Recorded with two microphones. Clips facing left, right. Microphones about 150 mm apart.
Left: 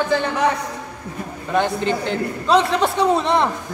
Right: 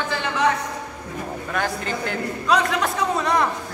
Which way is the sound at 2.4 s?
25° left (ahead or behind).